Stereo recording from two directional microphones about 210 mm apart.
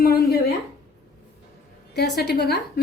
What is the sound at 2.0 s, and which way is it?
Speech, 50° left (ahead or behind).